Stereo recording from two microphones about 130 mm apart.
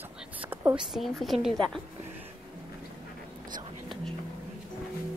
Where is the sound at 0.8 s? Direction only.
Centre (ahead or behind).